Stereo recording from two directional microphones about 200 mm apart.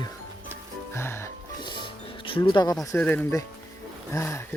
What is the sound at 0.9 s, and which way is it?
Music, 15° left (ahead or behind).